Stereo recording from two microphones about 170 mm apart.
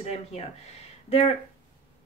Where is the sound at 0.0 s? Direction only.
35° left (ahead or behind).